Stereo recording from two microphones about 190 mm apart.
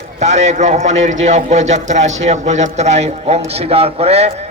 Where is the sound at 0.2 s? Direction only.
35° right (ahead or behind).